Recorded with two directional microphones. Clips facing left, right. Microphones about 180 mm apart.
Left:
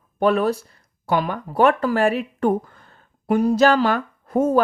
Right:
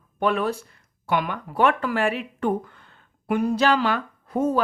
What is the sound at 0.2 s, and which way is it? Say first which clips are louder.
Speech: left 5 dB; 40° left (ahead or behind).